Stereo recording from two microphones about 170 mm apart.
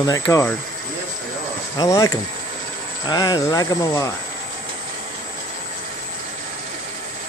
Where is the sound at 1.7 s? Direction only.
20° left (ahead or behind).